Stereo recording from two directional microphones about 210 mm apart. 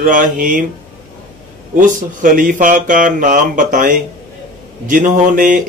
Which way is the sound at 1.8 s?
40° right (ahead or behind).